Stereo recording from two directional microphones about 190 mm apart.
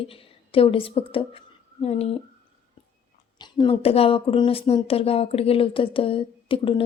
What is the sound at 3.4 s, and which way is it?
Speech, 25° left (ahead or behind).